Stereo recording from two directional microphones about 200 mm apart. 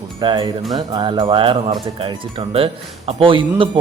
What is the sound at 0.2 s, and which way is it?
A man's voice, 25° right (ahead or behind).